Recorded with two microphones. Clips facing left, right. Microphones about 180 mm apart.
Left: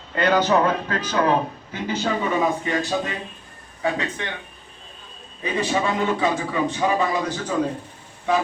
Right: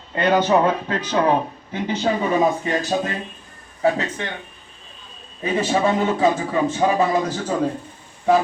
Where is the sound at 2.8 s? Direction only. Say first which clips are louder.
Right 2 dB; 40° right (ahead or behind).